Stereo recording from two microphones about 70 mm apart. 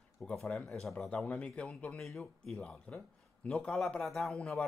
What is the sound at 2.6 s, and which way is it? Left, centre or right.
Speech, centre.